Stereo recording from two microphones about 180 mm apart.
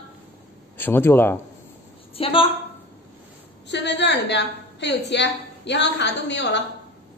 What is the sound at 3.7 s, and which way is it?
A woman's voice, 70° left (ahead or behind).